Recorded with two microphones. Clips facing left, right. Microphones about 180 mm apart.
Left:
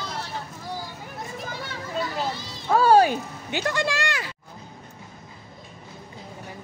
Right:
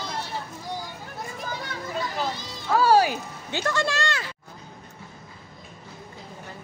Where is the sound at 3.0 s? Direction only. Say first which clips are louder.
Left 4 dB; 20° left (ahead or behind).